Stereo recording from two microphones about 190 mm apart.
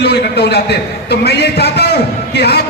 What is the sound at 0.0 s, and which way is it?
A man's voice, 60° left (ahead or behind).